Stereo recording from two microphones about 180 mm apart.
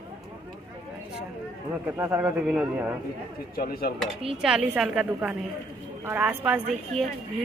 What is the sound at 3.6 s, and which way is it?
Speech, 55° left (ahead or behind).